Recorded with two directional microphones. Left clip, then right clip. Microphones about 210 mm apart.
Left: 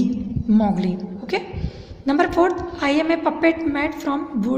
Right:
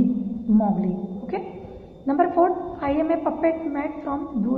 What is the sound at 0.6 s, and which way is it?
Speech, 55° left (ahead or behind).